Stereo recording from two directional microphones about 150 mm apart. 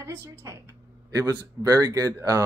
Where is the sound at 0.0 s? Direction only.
15° right (ahead or behind).